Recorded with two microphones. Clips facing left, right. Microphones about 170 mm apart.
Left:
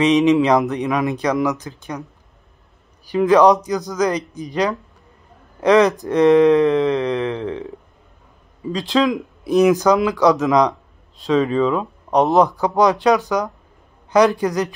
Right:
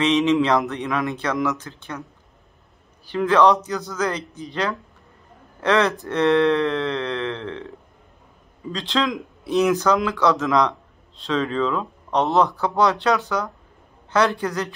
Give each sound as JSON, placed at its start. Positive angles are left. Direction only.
{"t": 0.0, "sound": "speech", "side_deg": 15}
{"t": 3.1, "sound": "speech", "side_deg": 10}
{"t": 8.7, "sound": "speech", "side_deg": 10}